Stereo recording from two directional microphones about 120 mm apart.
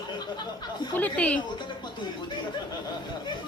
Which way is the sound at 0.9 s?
10° left (ahead or behind).